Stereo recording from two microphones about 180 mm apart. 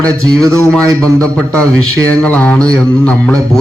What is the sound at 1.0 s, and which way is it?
Speech, 5° left (ahead or behind).